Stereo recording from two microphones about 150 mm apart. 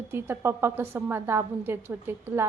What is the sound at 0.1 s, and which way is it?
A woman's voice, 15° right (ahead or behind).